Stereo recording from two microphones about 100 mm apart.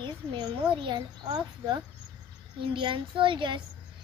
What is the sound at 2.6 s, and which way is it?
A child's voice, 55° right (ahead or behind).